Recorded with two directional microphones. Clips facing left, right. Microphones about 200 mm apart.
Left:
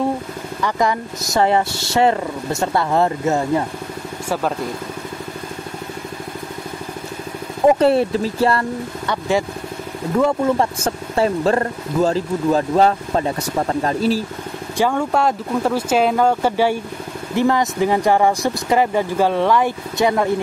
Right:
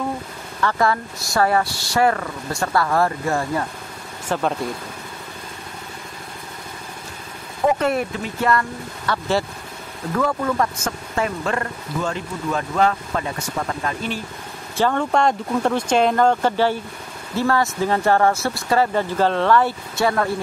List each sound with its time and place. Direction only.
0.6 s speech: 15° left (ahead or behind)
4.3 s speech: 5° left (ahead or behind)
7.8 s speech: 30° left (ahead or behind)
9.0 s speech: 20° left (ahead or behind); by 14.2 s 35° left (ahead or behind)
14.8 s speech: 10° left (ahead or behind)